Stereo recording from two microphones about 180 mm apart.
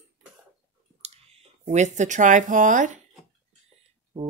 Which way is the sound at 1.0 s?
35° right (ahead or behind).